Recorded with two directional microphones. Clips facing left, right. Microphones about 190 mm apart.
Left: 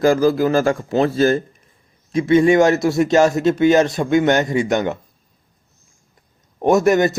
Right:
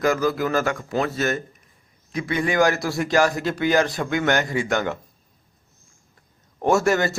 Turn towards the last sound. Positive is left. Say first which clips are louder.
# left 5 dB
turn(degrees=20)  # may be behind; listen again after turning